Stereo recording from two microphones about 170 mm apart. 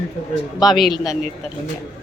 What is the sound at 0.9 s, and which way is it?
Speech, 20° left (ahead or behind).